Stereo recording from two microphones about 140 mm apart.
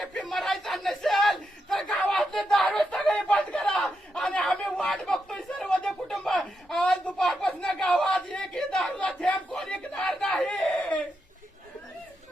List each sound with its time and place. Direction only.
0.0 s crowd: 5° left (ahead or behind)